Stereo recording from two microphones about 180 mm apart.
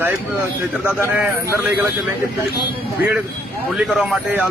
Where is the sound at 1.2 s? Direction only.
10° right (ahead or behind).